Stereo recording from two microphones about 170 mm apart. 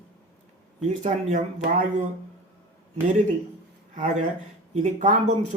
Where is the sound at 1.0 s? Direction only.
50° right (ahead or behind).